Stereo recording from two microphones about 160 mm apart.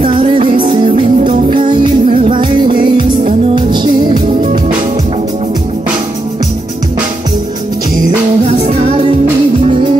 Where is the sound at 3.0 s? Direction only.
55° right (ahead or behind).